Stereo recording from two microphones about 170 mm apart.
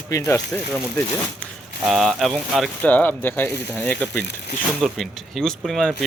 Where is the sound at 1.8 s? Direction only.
Centre (ahead or behind).